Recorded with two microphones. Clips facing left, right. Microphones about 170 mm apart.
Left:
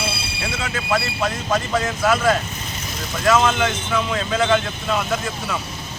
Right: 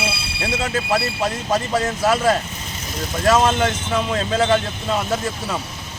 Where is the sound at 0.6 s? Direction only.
35° right (ahead or behind).